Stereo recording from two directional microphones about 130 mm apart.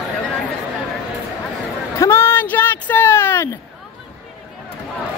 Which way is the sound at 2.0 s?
20° left (ahead or behind).